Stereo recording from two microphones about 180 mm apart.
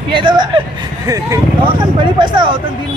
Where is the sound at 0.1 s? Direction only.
25° right (ahead or behind).